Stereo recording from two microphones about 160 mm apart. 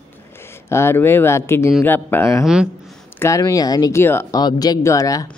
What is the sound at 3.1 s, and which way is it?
Speech, 20° left (ahead or behind).